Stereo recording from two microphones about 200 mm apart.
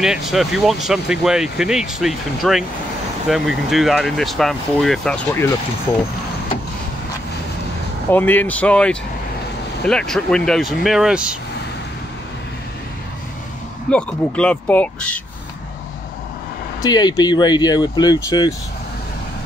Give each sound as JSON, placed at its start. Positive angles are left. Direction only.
{"t": 0.0, "sound": "speech", "side_deg": 0}
{"t": 8.1, "sound": "speech", "side_deg": 10}
{"t": 13.8, "sound": "speech", "side_deg": 5}
{"t": 16.8, "sound": "speech", "side_deg": 20}